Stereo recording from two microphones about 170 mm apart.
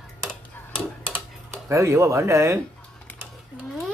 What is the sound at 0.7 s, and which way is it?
Tick-tock, 10° right (ahead or behind).